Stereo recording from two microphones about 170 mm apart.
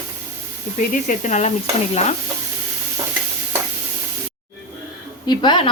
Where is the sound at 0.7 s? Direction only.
50° left (ahead or behind).